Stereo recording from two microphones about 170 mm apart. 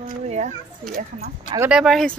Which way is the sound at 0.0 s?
40° right (ahead or behind).